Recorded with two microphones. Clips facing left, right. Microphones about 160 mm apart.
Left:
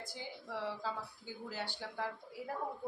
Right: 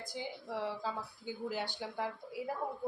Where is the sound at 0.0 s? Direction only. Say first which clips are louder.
Right 4 dB; 15° right (ahead or behind).